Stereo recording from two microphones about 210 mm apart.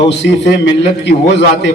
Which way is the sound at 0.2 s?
55° left (ahead or behind).